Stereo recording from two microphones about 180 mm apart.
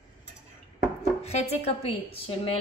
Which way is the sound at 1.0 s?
35° left (ahead or behind).